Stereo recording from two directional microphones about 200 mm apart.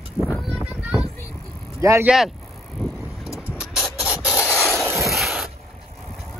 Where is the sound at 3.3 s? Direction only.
5° right (ahead or behind).